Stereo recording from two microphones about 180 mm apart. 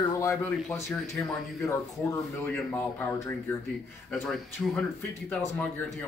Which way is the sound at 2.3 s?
10° left (ahead or behind).